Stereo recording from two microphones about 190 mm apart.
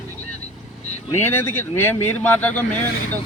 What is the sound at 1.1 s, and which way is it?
A man's voice, 10° left (ahead or behind).